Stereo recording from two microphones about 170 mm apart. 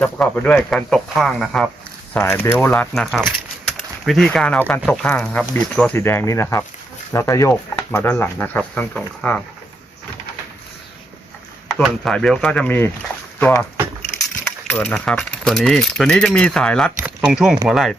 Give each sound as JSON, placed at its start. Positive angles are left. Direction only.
{"t": 0.0, "sound": "speech", "side_deg": 5}
{"t": 2.1, "sound": "speech", "side_deg": 15}
{"t": 11.7, "sound": "speech", "side_deg": 5}